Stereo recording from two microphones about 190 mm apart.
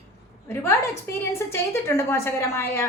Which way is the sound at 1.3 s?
15° left (ahead or behind).